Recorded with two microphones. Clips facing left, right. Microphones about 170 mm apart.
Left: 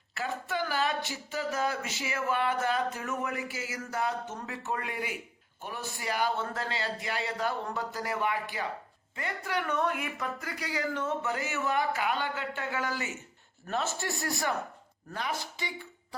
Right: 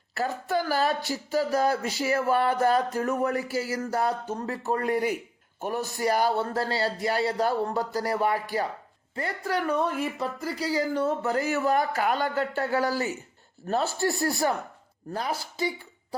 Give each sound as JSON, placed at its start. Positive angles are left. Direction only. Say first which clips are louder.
{"t": 0.1, "sound": "speech", "louder": "right 6 dB", "side_deg": -40}